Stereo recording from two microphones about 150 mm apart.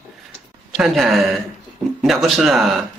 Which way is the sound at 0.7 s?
Centre (ahead or behind).